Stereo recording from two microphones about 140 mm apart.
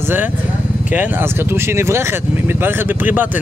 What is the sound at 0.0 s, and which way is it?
A man's voice, 15° right (ahead or behind).